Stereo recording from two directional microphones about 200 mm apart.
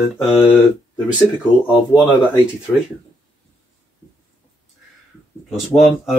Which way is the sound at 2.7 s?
10° left (ahead or behind).